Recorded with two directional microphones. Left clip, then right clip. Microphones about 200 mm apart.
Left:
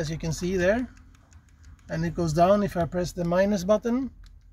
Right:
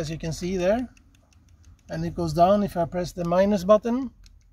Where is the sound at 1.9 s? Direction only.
5° right (ahead or behind).